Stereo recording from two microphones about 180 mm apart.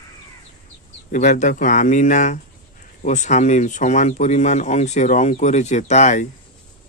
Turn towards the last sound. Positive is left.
turn(degrees=40)  # may be behind; listen again after turning